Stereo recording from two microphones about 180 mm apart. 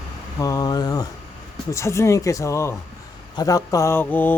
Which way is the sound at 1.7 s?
15° left (ahead or behind).